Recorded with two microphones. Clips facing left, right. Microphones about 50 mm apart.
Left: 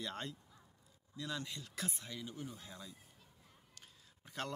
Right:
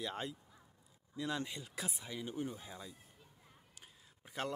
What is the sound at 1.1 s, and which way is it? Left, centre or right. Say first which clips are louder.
Speech: right 4 dB; right.